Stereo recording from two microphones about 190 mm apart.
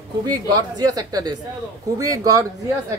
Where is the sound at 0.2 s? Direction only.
20° right (ahead or behind).